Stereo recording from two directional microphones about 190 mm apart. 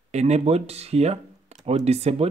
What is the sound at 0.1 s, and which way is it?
Speech, 35° right (ahead or behind).